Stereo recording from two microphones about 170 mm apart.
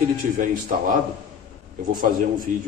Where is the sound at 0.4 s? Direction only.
50° right (ahead or behind).